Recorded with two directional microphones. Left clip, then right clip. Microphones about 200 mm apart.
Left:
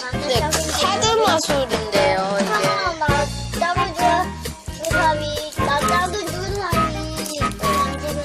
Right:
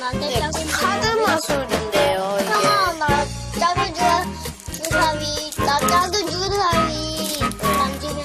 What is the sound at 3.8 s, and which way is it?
Music, centre (ahead or behind).